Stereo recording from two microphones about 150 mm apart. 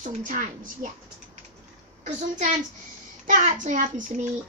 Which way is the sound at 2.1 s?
55° right (ahead or behind).